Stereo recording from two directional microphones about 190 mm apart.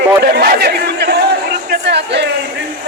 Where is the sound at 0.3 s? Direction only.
55° right (ahead or behind).